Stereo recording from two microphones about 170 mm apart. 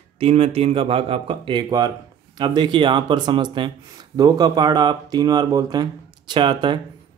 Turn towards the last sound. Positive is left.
turn(degrees=-25)  # may be behind; listen again after turning